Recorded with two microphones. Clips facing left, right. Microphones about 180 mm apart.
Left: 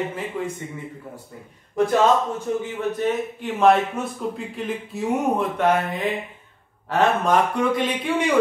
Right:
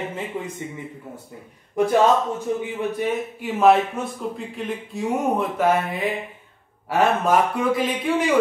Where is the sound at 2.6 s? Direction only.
10° right (ahead or behind).